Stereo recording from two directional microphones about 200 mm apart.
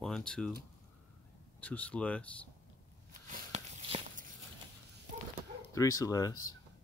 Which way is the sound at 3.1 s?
40° right (ahead or behind).